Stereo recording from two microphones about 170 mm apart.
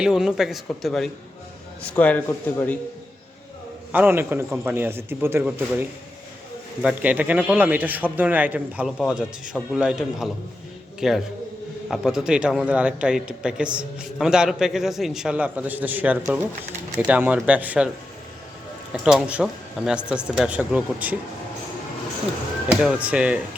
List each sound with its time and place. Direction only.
0.0 s a man's voice: 5° right (ahead or behind)
3.9 s a man's voice: 10° right (ahead or behind)
6.8 s a man's voice: 10° right (ahead or behind)
19.0 s speech: 5° right (ahead or behind)
22.7 s a man's voice: 5° right (ahead or behind)